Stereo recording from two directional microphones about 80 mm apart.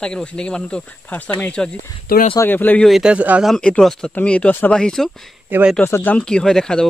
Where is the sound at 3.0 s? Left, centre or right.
Centre.